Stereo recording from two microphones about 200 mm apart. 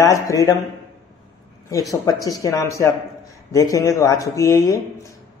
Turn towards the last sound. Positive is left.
turn(degrees=15)  # may be behind; listen again after turning